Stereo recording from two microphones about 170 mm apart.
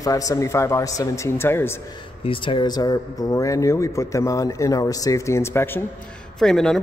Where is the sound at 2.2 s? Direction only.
30° left (ahead or behind); by 5.8 s 15° left (ahead or behind).